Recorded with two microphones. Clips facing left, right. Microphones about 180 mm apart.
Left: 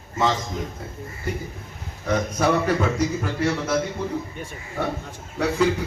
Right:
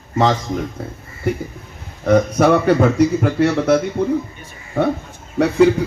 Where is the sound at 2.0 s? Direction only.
65° right (ahead or behind).